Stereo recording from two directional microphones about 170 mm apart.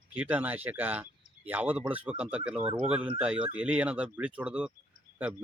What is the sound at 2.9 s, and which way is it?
Speech, 5° right (ahead or behind).